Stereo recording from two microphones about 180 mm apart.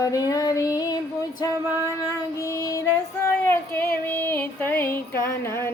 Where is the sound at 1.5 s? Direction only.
15° right (ahead or behind).